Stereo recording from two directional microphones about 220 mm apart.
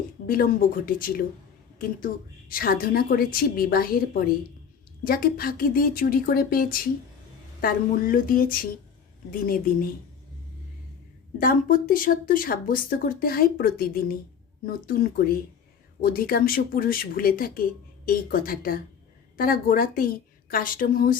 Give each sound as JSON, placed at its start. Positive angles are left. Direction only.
{"t": 0.3, "sound": "speech", "side_deg": 40}
{"t": 2.5, "sound": "speech", "side_deg": 40}
{"t": 11.3, "sound": "speech", "side_deg": 40}